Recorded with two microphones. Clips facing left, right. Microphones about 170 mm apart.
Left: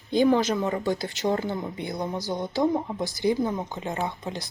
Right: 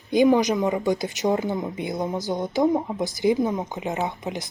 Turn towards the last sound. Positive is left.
turn(degrees=-20)  # may be behind; listen again after turning